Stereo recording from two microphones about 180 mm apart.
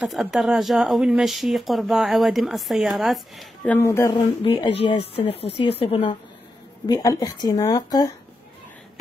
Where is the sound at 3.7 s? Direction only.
15° left (ahead or behind).